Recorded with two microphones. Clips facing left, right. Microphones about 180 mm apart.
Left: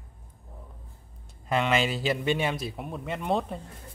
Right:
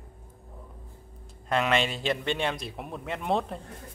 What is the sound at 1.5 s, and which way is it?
A man's voice, centre (ahead or behind).